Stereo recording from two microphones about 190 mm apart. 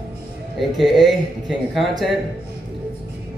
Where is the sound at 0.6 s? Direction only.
Centre (ahead or behind).